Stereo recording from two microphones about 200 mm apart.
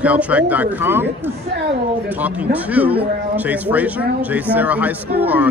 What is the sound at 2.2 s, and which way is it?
Speech, 10° right (ahead or behind).